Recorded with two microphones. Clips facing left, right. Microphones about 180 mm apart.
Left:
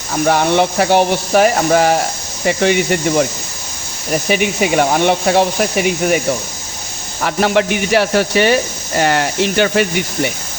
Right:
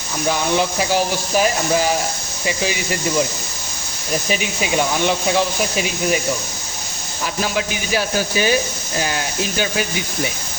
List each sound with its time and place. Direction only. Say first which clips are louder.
0.1 s speech: left 6 dB; 65° left (ahead or behind)
4.3 s speech: left 8 dB; 60° left (ahead or behind)
7.2 s speech: left 8 dB; 65° left (ahead or behind)